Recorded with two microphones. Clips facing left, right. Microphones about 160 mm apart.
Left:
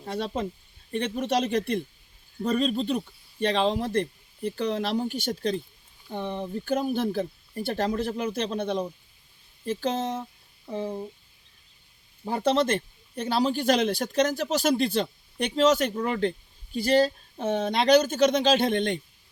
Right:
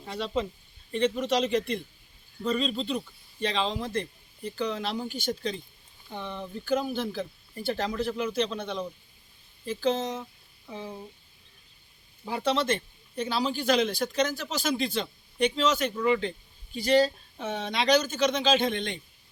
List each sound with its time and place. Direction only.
0.0 s speech: 50° left (ahead or behind)
6.7 s speech: 50° left (ahead or behind)
12.3 s speech: 50° left (ahead or behind)